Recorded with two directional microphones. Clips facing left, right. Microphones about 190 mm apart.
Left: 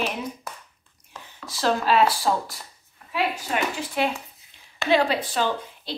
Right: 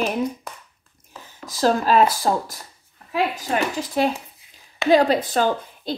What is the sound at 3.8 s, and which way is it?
A woman's voice, 40° right (ahead or behind).